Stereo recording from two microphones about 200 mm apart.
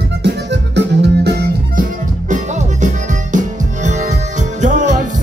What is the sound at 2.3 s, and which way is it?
Music, 35° right (ahead or behind).